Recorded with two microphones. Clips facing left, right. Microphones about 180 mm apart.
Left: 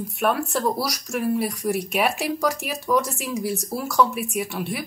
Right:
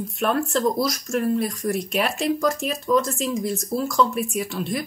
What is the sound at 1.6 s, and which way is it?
Speech, 65° left (ahead or behind).